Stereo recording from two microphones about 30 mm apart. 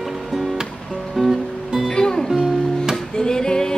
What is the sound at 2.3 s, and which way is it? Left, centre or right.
Music, centre.